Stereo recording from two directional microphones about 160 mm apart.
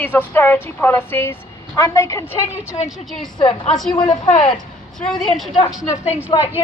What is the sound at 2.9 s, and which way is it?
A man's voice, centre (ahead or behind).